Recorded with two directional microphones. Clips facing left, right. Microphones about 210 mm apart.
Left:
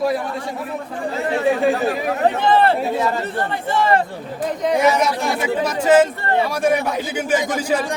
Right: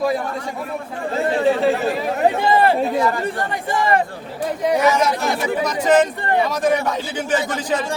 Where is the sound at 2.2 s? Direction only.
10° right (ahead or behind).